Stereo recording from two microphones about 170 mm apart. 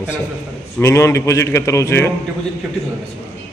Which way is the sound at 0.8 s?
15° left (ahead or behind).